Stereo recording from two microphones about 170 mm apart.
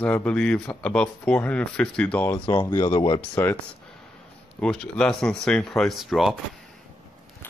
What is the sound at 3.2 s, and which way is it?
Speech, 10° left (ahead or behind).